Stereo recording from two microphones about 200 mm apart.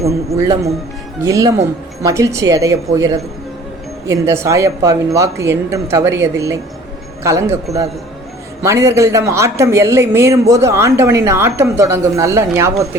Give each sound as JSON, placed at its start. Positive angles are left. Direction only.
{"t": 0.0, "sound": "speech", "side_deg": -15}